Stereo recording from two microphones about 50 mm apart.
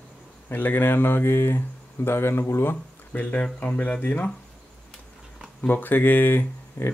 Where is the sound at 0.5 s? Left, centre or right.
Left.